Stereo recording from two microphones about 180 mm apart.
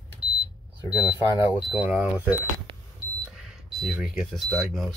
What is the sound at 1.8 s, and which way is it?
Speech, 5° right (ahead or behind).